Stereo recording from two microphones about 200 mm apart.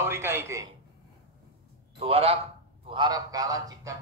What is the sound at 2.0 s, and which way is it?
A man's voice, 30° right (ahead or behind).